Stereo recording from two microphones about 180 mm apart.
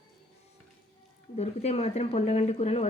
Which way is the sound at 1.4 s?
35° left (ahead or behind).